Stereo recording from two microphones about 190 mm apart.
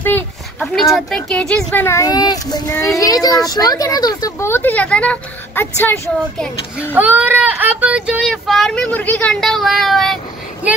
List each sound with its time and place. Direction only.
0.0 s a woman's voice: 5° left (ahead or behind)
6.9 s speech: 10° right (ahead or behind)